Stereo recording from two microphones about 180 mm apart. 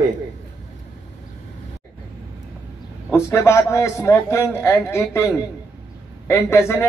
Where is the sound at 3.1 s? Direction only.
15° left (ahead or behind).